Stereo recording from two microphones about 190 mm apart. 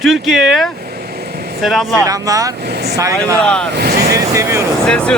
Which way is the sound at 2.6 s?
60° right (ahead or behind).